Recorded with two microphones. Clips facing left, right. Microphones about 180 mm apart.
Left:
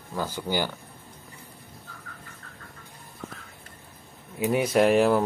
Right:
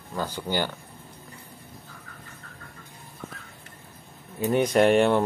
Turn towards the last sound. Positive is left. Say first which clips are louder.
# right 1 dB
turn(degrees=0)  # may be behind; listen again after turning